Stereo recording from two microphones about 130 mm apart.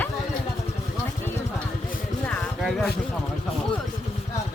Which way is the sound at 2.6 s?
Centre (ahead or behind).